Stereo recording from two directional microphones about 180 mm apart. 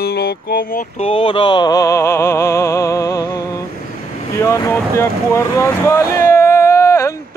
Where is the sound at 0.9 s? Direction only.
30° left (ahead or behind).